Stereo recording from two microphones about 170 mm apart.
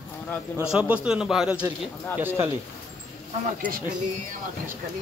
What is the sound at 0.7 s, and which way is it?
A man's voice, 5° right (ahead or behind).